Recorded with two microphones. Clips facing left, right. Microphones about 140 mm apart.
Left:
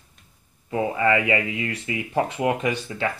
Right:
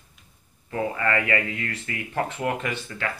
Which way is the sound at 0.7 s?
20° left (ahead or behind).